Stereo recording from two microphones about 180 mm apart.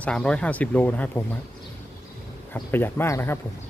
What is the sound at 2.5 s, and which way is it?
Speech, 10° left (ahead or behind).